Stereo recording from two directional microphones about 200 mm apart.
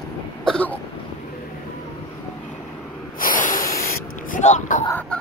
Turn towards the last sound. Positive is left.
turn(degrees=5)  # may be behind; listen again after turning